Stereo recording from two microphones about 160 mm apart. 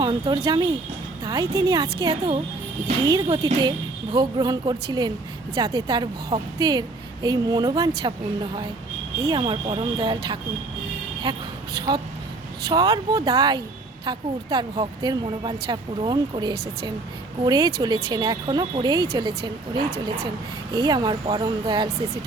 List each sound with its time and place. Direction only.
0.0 s speech: 25° right (ahead or behind)
9.2 s speech: 25° right (ahead or behind)
12.6 s speech: 25° right (ahead or behind)
20.7 s speech: 25° right (ahead or behind)